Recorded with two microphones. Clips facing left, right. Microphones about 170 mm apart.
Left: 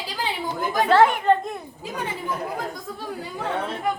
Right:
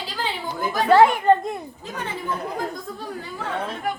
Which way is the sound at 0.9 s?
10° right (ahead or behind).